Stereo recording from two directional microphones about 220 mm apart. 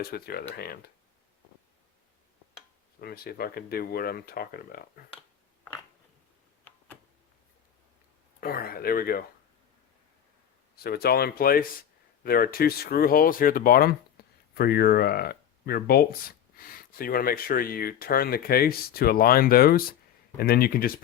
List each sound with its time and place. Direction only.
0.0 s speech: 45° left (ahead or behind)
3.0 s speech: 45° left (ahead or behind)
8.4 s speech: 45° left (ahead or behind)
10.8 s speech: 45° left (ahead or behind)